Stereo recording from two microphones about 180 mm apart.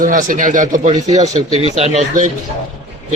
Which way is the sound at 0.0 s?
50° right (ahead or behind).